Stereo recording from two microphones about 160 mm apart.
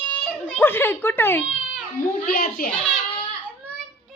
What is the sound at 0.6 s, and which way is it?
Speech, 15° left (ahead or behind).